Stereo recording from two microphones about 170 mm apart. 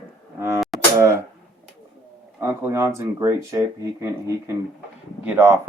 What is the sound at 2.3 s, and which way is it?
Speech, 15° right (ahead or behind).